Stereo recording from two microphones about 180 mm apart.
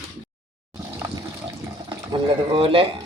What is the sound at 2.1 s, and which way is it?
Speech, 30° right (ahead or behind).